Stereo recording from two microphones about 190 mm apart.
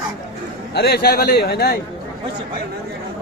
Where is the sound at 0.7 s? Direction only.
60° left (ahead or behind).